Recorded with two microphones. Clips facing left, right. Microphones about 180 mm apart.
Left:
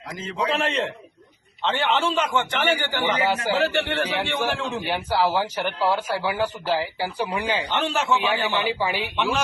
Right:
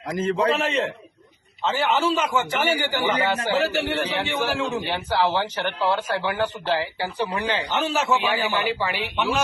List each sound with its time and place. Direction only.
0.1 s a man's voice: 55° right (ahead or behind)
0.4 s a man's voice: centre (ahead or behind)
3.2 s speech: 10° left (ahead or behind)
3.6 s a man's voice: 5° right (ahead or behind)
4.8 s speech: 10° left (ahead or behind)
7.7 s a man's voice: 5° right (ahead or behind)
8.6 s speech: 15° left (ahead or behind)
9.1 s a man's voice: 10° right (ahead or behind)